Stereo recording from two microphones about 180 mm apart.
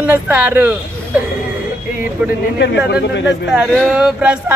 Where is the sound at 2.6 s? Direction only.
70° left (ahead or behind).